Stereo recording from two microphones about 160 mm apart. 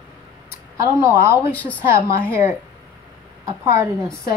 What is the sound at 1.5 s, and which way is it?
Speech, 10° left (ahead or behind).